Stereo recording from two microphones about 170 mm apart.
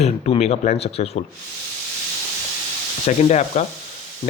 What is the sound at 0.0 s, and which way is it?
Speech, 40° left (ahead or behind).